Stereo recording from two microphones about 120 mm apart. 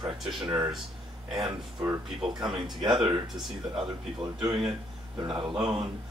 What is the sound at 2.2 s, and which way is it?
Speech, 40° right (ahead or behind).